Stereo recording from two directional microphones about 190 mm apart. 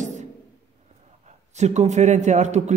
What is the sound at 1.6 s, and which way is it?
A woman's voice, 35° right (ahead or behind).